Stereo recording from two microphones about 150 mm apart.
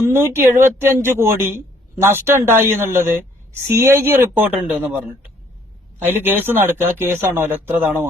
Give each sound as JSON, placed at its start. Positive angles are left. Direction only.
{"t": 0.0, "sound": "speech", "side_deg": -15}
{"t": 6.0, "sound": "speech", "side_deg": -15}